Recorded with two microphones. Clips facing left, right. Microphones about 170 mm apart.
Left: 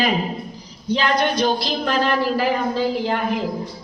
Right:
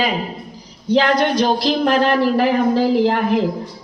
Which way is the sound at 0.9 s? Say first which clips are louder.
Right 4 dB; 75° right (ahead or behind).